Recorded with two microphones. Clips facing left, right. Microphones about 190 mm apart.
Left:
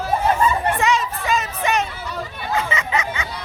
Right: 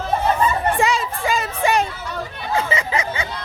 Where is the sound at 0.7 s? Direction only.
30° right (ahead or behind).